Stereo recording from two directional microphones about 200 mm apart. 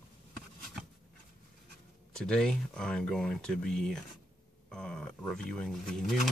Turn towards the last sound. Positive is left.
turn(degrees=0)  # may be behind; listen again after turning